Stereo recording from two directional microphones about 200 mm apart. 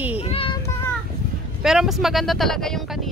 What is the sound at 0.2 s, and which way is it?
Child singing, 30° left (ahead or behind).